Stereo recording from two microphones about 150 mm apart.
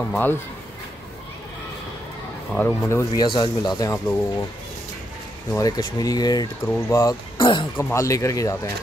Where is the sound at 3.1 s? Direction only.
30° left (ahead or behind).